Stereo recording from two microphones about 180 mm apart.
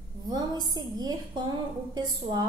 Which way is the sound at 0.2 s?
20° right (ahead or behind).